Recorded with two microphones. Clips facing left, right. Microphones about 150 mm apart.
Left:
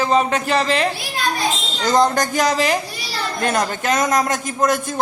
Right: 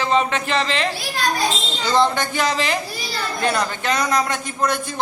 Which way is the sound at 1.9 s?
45° left (ahead or behind).